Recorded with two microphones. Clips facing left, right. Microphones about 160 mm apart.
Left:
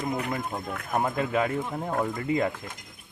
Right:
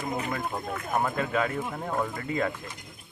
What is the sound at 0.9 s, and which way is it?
Speech, 20° left (ahead or behind).